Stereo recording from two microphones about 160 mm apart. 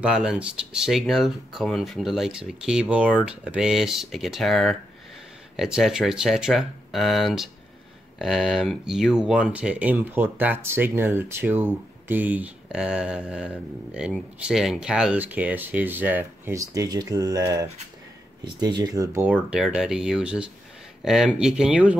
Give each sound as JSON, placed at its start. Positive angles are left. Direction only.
{"t": 0.0, "sound": "speech", "side_deg": -5}
{"t": 19.2, "sound": "speech", "side_deg": -5}